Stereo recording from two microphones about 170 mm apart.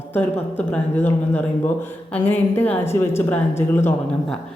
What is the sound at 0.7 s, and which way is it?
Speech, 10° left (ahead or behind).